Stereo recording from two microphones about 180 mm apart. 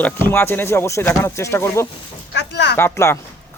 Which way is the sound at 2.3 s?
75° left (ahead or behind).